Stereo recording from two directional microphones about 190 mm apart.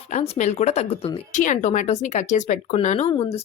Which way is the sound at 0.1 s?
40° left (ahead or behind).